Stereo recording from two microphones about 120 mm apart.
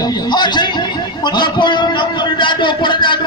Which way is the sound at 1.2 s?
40° left (ahead or behind).